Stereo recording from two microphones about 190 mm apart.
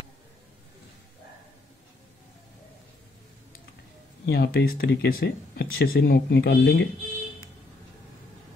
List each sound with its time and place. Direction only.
4.3 s speech: 55° left (ahead or behind)